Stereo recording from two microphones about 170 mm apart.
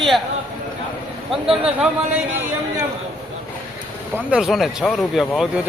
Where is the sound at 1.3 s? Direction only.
5° right (ahead or behind).